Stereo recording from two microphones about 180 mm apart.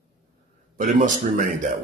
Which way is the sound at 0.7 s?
45° right (ahead or behind).